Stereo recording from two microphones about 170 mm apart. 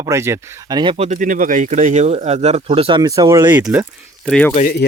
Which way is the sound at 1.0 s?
50° right (ahead or behind).